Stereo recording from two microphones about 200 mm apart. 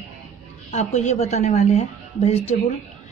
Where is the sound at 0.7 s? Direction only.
35° left (ahead or behind).